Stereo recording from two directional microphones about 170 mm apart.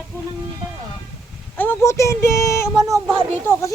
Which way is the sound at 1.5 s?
15° left (ahead or behind).